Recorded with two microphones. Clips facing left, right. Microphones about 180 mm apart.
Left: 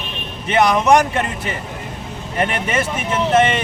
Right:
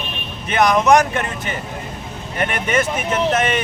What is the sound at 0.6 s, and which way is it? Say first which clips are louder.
Speech: even; 30° left (ahead or behind).